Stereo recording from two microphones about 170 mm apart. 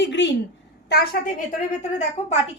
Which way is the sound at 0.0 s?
90° left.